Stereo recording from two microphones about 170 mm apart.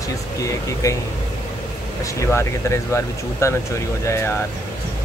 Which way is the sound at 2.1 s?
15° left (ahead or behind).